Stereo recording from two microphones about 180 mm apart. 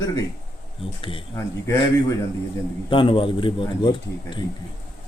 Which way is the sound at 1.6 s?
15° left (ahead or behind).